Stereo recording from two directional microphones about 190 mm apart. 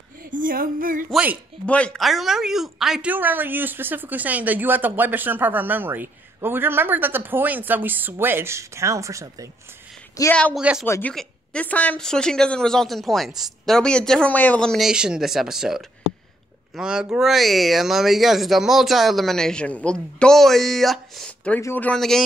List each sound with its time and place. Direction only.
0.2 s a sound: 45° right (ahead or behind)
1.1 s speech: 10° right (ahead or behind)
1.7 s speech: 5° left (ahead or behind); by 9.5 s 15° right (ahead or behind)
10.3 s a woman's voice: 5° left (ahead or behind)
10.6 s a woman's voice: 5° right (ahead or behind)
10.9 s a woman's voice: 10° left (ahead or behind)
21.5 s speech: 10° left (ahead or behind)